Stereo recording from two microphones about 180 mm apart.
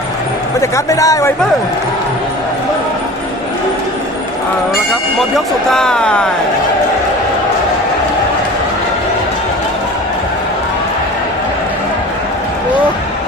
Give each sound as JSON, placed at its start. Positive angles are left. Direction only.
{"t": 0.6, "sound": "speech", "side_deg": 20}
{"t": 5.7, "sound": "speech", "side_deg": 5}